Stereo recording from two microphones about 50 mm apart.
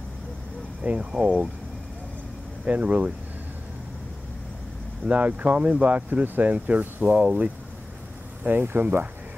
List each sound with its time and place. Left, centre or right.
0.8 s speech: right
2.6 s speech: right
5.0 s speech: right
7.1 s speech: right
8.5 s speech: right